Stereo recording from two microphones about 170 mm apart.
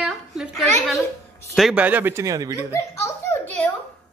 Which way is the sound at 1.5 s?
Centre (ahead or behind).